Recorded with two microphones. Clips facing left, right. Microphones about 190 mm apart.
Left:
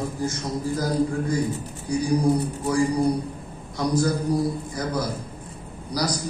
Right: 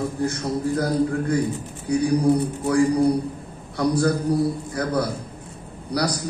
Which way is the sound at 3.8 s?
65° right (ahead or behind).